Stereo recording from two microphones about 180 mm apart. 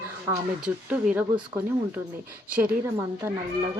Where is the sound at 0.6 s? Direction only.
5° right (ahead or behind).